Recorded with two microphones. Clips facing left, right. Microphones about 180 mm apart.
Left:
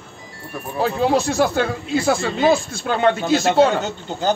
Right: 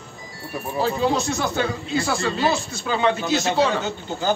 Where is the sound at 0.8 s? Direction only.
60° left (ahead or behind).